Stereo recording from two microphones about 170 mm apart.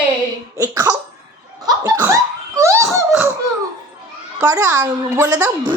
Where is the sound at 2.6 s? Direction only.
15° right (ahead or behind).